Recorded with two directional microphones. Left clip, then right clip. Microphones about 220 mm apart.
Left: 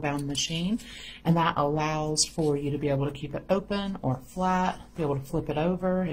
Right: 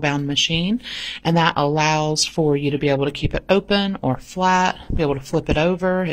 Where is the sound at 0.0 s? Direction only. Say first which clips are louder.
Right 10 dB; 35° right (ahead or behind).